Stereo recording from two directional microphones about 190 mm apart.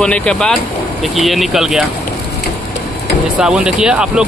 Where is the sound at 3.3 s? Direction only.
5° right (ahead or behind).